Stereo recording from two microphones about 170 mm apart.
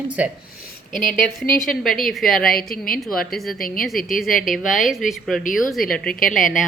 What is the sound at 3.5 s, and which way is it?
Speech, 55° left (ahead or behind).